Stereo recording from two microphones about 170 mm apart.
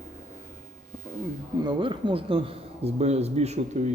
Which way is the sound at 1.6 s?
30° right (ahead or behind).